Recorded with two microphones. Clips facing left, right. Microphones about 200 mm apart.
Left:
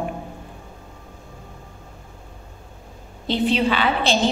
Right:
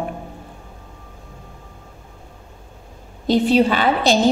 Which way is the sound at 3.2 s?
40° right (ahead or behind).